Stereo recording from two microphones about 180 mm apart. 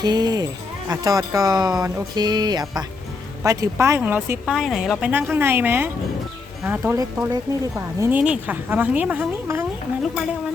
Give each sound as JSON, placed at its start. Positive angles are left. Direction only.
{"t": 0.0, "sound": "speech", "side_deg": -20}